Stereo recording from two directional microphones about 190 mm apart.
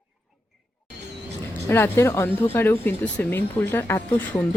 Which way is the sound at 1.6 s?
15° left (ahead or behind).